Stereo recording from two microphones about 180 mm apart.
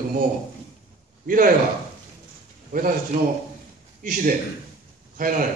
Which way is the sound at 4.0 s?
50° right (ahead or behind).